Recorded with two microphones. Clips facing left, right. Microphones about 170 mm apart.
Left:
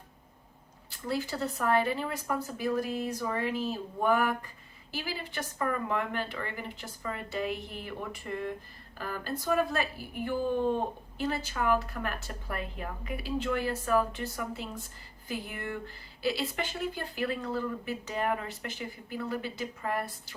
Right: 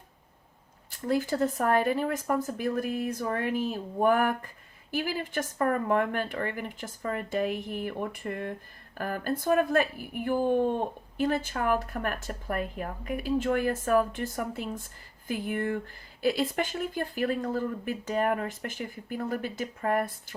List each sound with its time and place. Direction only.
0.9 s speech: 50° right (ahead or behind)